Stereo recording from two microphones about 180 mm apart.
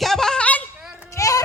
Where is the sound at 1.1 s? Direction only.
20° left (ahead or behind).